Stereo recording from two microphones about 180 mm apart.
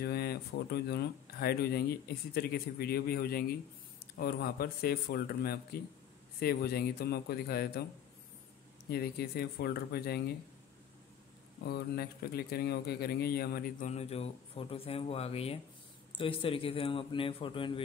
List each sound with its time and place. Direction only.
0.0 s speech: 60° left (ahead or behind)
8.9 s speech: 60° left (ahead or behind)
11.6 s a man's voice: 65° left (ahead or behind); by 17.8 s 25° left (ahead or behind)